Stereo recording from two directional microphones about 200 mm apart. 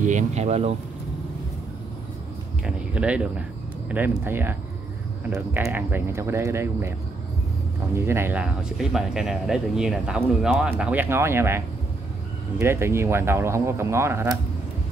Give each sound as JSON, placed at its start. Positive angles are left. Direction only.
{"t": 0.0, "sound": "speech", "side_deg": -35}
{"t": 2.6, "sound": "speech", "side_deg": -5}
{"t": 7.9, "sound": "speech", "side_deg": -10}